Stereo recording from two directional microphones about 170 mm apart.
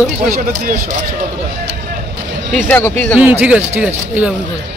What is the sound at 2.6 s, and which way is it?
Speech, 10° left (ahead or behind).